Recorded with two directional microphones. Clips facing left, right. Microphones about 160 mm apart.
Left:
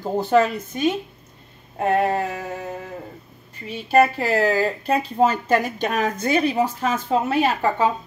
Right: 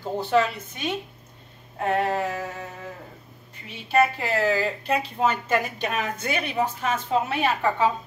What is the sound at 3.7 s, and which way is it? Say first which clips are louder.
Speech: left 4 dB; 40° left (ahead or behind).